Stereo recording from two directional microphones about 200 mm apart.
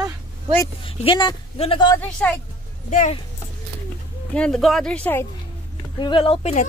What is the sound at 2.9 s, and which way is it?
Speech, 35° left (ahead or behind).